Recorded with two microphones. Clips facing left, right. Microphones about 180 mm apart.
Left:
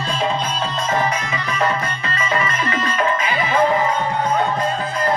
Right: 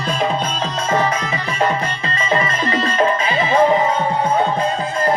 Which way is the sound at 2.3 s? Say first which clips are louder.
Right 4 dB; 35° right (ahead or behind).